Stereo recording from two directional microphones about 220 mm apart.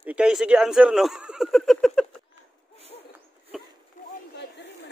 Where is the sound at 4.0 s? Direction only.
35° left (ahead or behind).